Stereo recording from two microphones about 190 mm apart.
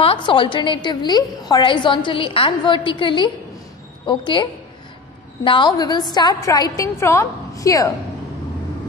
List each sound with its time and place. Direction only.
0.0 s a woman's voice: 25° left (ahead or behind)